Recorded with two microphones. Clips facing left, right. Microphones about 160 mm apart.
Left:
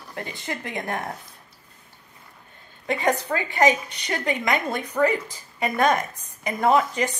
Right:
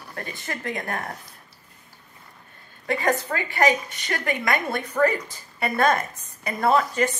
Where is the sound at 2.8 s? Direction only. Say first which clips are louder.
Even; 20° left (ahead or behind).